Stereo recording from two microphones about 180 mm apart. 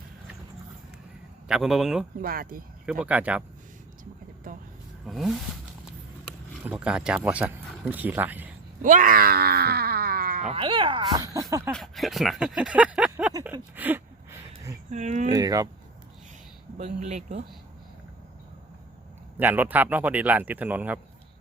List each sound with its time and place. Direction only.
1.5 s speech: 5° right (ahead or behind)
2.2 s speech: 55° right (ahead or behind)
3.0 s speech: 10° right (ahead or behind)
4.5 s vehicle: 50° right (ahead or behind)
5.0 s speech: centre (ahead or behind)
6.7 s speech: 5° right (ahead or behind)
8.8 s groan: 45° right (ahead or behind)
10.6 s speech: 30° right (ahead or behind)
11.7 s speech: centre (ahead or behind)
13.4 s a sound: 10° right (ahead or behind)
14.8 s speech: 40° right (ahead or behind)
15.3 s speech: 20° right (ahead or behind)
16.7 s speech: 40° right (ahead or behind)
19.4 s speech: 10° right (ahead or behind)